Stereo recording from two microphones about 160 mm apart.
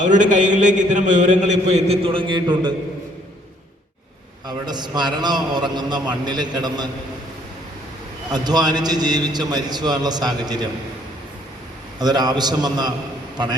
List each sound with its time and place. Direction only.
0.0 s a man's voice: 50° right (ahead or behind); by 2.7 s 30° right (ahead or behind)
4.4 s a man's voice: 25° right (ahead or behind)
8.3 s a man's voice: 25° right (ahead or behind)
11.9 s a man's voice: 25° right (ahead or behind)